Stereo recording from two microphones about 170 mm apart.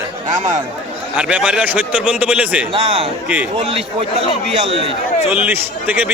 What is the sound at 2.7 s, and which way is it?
A man's voice, 30° right (ahead or behind).